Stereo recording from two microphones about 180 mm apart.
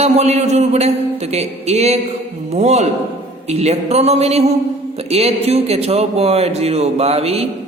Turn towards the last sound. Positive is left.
turn(degrees=-35)  # may be behind; listen again after turning